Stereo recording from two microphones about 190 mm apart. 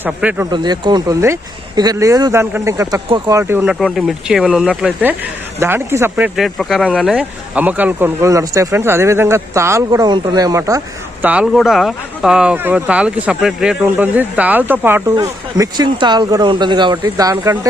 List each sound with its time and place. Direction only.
0.0 s speech: 10° right (ahead or behind)
0.5 s speech: 25° right (ahead or behind)
3.8 s speech: centre (ahead or behind); by 17.7 s 15° right (ahead or behind)